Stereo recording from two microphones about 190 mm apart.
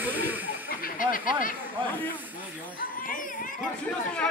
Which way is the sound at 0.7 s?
50° left (ahead or behind).